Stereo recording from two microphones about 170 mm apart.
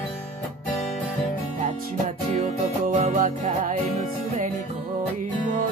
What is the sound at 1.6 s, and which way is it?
Music, 45° right (ahead or behind).